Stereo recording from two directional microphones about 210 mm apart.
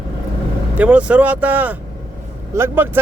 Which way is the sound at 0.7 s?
5° right (ahead or behind).